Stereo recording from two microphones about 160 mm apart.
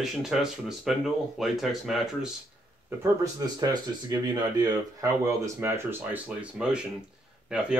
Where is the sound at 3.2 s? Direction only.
25° right (ahead or behind).